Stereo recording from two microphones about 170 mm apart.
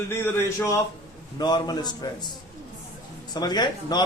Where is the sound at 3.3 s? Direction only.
25° left (ahead or behind).